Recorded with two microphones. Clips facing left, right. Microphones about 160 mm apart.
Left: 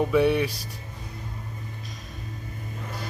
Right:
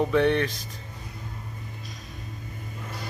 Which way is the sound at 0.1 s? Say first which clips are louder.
Left 1 dB; 10° left (ahead or behind).